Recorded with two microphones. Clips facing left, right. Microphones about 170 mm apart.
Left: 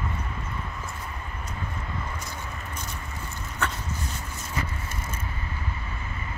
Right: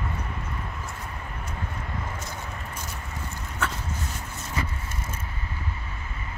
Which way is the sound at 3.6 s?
5° right (ahead or behind).